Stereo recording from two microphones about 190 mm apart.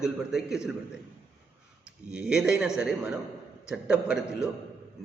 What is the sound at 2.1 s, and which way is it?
A man's voice, 5° right (ahead or behind).